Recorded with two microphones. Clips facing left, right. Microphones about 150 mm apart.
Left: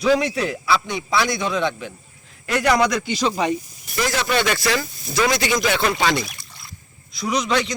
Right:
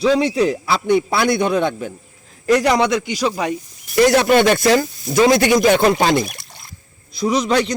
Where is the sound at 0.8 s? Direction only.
55° right (ahead or behind).